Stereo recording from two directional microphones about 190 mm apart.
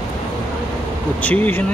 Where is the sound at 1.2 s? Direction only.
10° left (ahead or behind).